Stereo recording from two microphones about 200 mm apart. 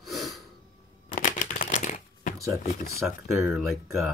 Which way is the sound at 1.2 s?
40° left (ahead or behind).